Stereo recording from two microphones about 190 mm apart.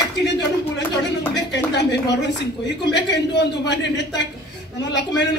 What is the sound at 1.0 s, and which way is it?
A woman's voice, 65° left (ahead or behind).